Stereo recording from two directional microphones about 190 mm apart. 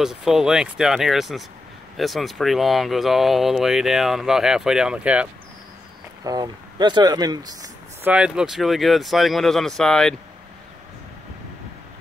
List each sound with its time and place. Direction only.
0.0 s speech: centre (ahead or behind)
6.2 s speech: 20° right (ahead or behind)
8.0 s speech: 5° right (ahead or behind)